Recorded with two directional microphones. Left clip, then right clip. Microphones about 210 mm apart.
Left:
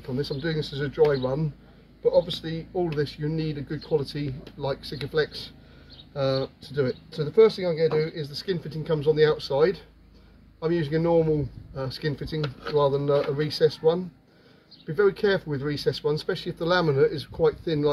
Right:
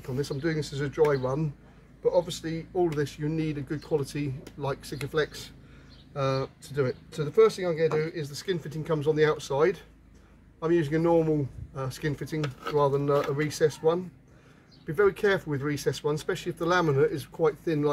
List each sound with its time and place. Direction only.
0.0 s speech: 15° right (ahead or behind)